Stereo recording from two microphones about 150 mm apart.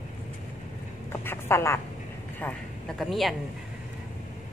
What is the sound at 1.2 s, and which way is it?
Speech, 15° left (ahead or behind).